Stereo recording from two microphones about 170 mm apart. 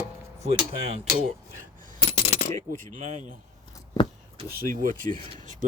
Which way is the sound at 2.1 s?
40° left (ahead or behind).